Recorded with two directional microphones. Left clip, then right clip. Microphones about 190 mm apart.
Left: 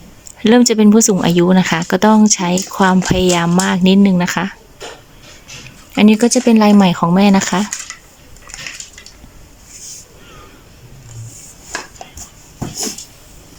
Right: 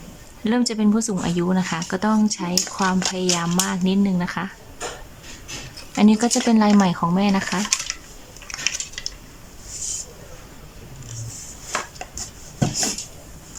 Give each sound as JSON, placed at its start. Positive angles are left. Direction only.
{"t": 0.4, "sound": "speech", "side_deg": 30}
{"t": 6.0, "sound": "speech", "side_deg": 15}